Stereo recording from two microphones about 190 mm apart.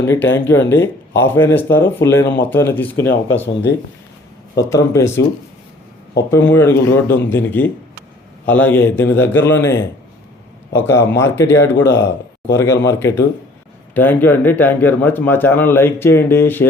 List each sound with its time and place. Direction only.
0.0 s a man's voice: 15° left (ahead or behind)
2.2 s speech: 60° left (ahead or behind)
2.5 s a man's voice: 10° left (ahead or behind)
3.4 s speech: 70° left (ahead or behind)
4.7 s a man's voice: 15° left (ahead or behind)